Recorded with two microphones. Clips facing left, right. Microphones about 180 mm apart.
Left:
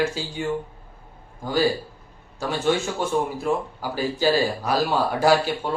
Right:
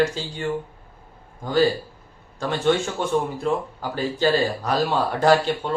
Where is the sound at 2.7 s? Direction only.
5° left (ahead or behind).